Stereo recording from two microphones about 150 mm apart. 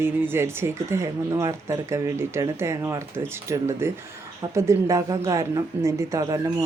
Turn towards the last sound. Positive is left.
turn(degrees=-20)  # may be behind; listen again after turning